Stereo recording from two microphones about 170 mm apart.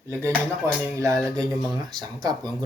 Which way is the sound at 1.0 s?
20° right (ahead or behind).